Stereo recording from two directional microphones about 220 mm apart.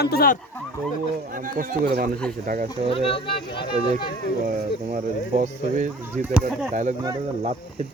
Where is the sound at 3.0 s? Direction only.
25° left (ahead or behind).